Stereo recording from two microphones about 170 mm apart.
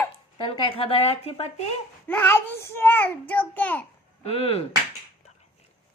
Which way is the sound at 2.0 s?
10° left (ahead or behind).